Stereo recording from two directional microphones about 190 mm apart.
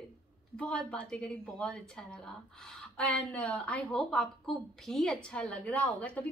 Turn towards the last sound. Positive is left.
turn(degrees=10)  # may be behind; listen again after turning